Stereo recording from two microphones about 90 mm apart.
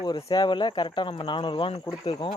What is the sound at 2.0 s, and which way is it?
Speech, 90° left.